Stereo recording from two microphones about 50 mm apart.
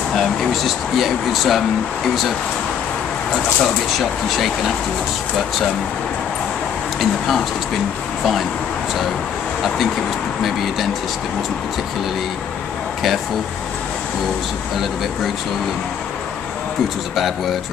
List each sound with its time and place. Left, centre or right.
0.1 s speech: centre
3.6 s speech: centre
7.0 s speech: centre
10.4 s speech: centre
17.1 s speech: centre